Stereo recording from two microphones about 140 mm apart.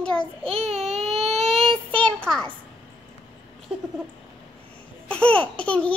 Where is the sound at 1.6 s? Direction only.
5° left (ahead or behind).